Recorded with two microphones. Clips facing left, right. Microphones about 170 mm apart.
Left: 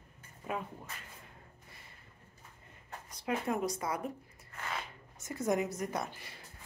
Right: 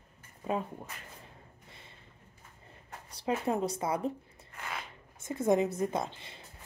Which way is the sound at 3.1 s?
30° right (ahead or behind).